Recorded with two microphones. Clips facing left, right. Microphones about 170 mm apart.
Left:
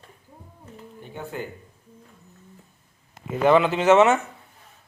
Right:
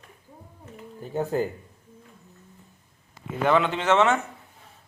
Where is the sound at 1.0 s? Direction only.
40° right (ahead or behind).